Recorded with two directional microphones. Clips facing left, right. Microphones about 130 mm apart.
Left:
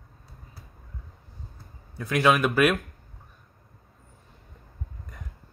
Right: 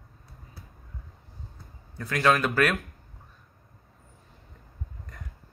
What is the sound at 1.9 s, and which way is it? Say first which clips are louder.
Speech: left 2 dB; 15° left (ahead or behind).